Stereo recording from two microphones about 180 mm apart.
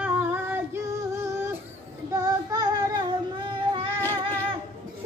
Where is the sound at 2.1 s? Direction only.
20° right (ahead or behind).